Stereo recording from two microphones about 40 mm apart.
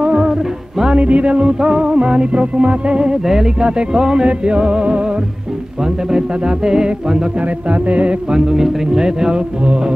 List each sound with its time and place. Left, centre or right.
0.0 s music: right
0.9 s music: right
3.3 s music: centre
3.6 s music: right
6.0 s music: centre
7.7 s music: right
8.3 s music: centre